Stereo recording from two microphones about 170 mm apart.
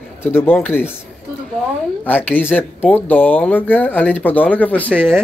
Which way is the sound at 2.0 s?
10° left (ahead or behind).